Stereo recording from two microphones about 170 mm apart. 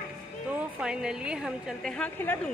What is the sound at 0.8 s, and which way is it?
A woman's voice, 5° right (ahead or behind).